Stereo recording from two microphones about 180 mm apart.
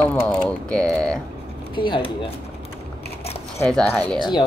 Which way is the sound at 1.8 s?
25° left (ahead or behind).